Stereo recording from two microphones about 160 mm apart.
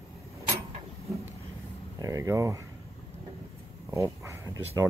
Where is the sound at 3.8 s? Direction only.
15° right (ahead or behind).